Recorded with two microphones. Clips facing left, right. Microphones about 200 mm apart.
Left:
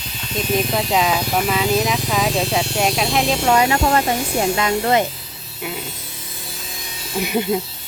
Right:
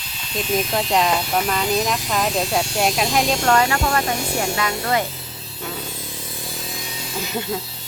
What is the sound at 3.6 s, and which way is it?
Speech, 25° left (ahead or behind).